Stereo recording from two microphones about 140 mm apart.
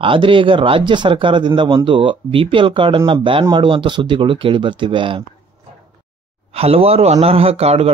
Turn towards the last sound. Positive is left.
turn(degrees=-45)  # may be behind; listen again after turning